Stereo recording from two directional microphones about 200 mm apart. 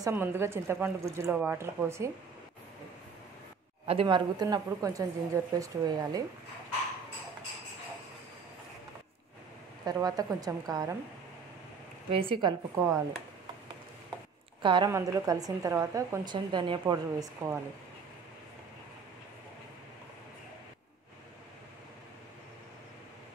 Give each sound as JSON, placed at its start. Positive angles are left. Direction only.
{"t": 0.0, "sound": "a woman's voice", "side_deg": -10}
{"t": 3.8, "sound": "a woman's voice", "side_deg": -25}
{"t": 9.8, "sound": "a woman's voice", "side_deg": -20}
{"t": 12.1, "sound": "a woman's voice", "side_deg": -25}
{"t": 14.6, "sound": "a woman's voice", "side_deg": -25}